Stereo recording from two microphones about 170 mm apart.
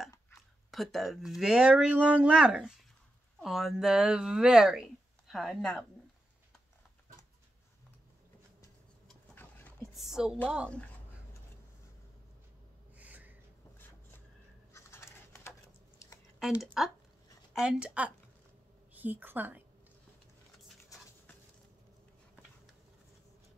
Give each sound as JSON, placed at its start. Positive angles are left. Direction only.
{"t": 0.7, "sound": "speech", "side_deg": 0}
{"t": 9.3, "sound": "a sound", "side_deg": 10}
{"t": 9.9, "sound": "speech", "side_deg": 0}
{"t": 12.9, "sound": "gasp", "side_deg": -10}
{"t": 14.7, "sound": "a sound", "side_deg": 15}
{"t": 16.8, "sound": "a woman's voice", "side_deg": 0}